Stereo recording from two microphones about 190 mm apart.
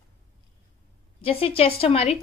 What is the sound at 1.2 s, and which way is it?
Speech, 30° left (ahead or behind).